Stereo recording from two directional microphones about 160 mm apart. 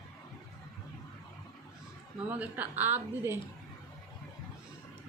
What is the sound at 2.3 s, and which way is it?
A woman's voice, 10° right (ahead or behind).